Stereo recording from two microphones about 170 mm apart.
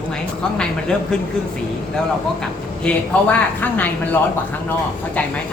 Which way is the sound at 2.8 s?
10° left (ahead or behind).